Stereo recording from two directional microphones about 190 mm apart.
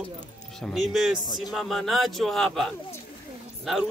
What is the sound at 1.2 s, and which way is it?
Speech, 20° left (ahead or behind).